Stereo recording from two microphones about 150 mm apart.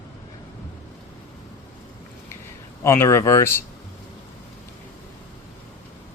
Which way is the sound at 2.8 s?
20° left (ahead or behind).